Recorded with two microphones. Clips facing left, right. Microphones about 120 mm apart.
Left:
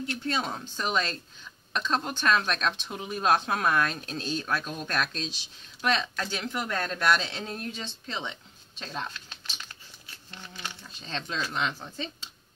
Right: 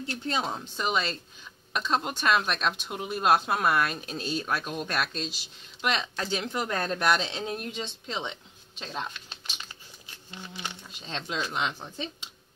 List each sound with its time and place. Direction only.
0.0 s speech: 25° right (ahead or behind)
0.7 s speech: 5° right (ahead or behind)